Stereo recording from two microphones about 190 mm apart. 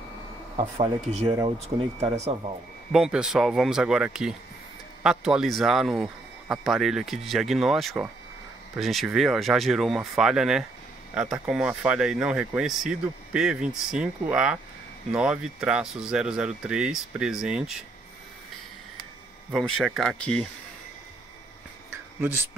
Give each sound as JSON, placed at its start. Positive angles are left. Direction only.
{"t": 0.7, "sound": "speech", "side_deg": -35}
{"t": 2.0, "sound": "speech", "side_deg": -15}
{"t": 2.9, "sound": "speech", "side_deg": -5}
{"t": 19.5, "sound": "speech", "side_deg": 0}
{"t": 21.9, "sound": "a sound", "side_deg": -10}